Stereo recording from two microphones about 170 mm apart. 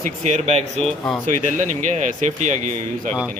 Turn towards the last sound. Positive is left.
turn(degrees=-45)  # may be behind; listen again after turning